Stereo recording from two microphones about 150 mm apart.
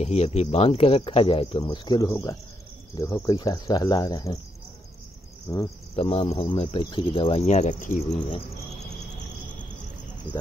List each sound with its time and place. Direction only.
0.0 s speech: 45° left (ahead or behind); by 4.4 s 25° left (ahead or behind)
5.5 s speech: 25° left (ahead or behind)
5.9 s speech: 45° left (ahead or behind)